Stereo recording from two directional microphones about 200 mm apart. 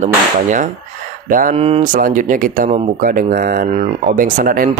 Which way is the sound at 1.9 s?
40° right (ahead or behind).